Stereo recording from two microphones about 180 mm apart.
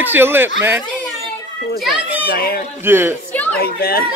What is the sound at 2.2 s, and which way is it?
Speech, 55° left (ahead or behind).